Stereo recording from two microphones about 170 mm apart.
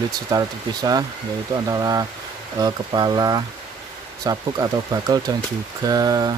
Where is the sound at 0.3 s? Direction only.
20° right (ahead or behind).